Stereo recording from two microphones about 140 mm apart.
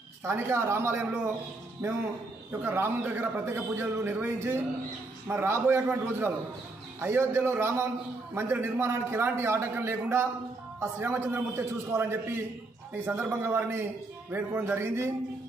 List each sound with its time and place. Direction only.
0.2 s a man's voice: 20° right (ahead or behind)